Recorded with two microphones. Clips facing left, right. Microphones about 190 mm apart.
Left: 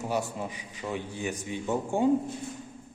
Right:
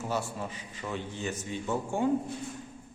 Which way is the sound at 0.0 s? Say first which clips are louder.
Left 2 dB; 15° left (ahead or behind).